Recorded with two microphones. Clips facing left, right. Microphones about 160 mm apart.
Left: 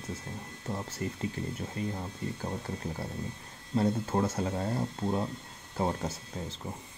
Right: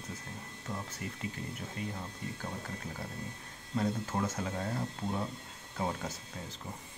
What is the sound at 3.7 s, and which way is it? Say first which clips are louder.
Speech: left 5 dB; 30° left (ahead or behind).